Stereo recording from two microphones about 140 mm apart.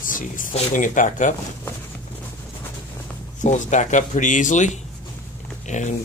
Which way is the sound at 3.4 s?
60° left (ahead or behind).